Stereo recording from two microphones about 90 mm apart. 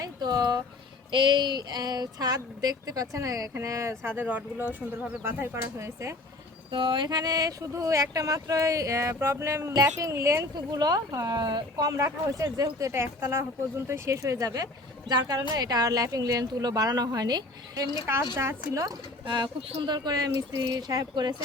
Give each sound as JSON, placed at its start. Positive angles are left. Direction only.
{"t": 0.0, "sound": "a sound", "side_deg": -45}
{"t": 1.1, "sound": "speech", "side_deg": -65}
{"t": 6.7, "sound": "speech", "side_deg": -65}
{"t": 10.5, "sound": "speech", "side_deg": -50}
{"t": 18.3, "sound": "speech", "side_deg": -35}
{"t": 19.2, "sound": "speech", "side_deg": -55}